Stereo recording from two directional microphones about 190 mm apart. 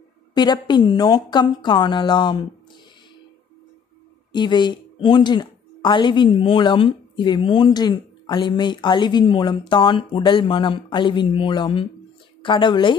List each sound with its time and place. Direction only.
0.3 s a woman's voice: 20° left (ahead or behind)
4.3 s a woman's voice: 25° left (ahead or behind)